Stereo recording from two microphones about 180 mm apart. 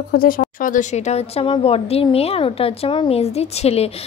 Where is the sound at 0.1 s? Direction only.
55° left (ahead or behind).